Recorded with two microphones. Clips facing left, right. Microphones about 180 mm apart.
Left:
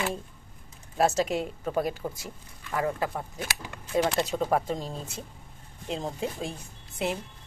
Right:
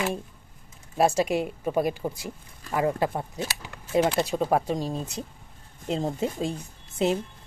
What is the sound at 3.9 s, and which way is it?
Speech, 10° right (ahead or behind).